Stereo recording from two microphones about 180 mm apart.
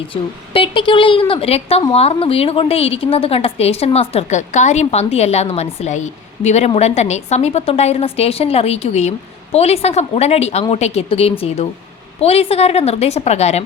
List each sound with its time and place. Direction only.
0.1 s a woman's voice: 30° left (ahead or behind)